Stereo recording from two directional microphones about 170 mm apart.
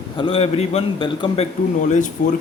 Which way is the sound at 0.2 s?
35° left (ahead or behind).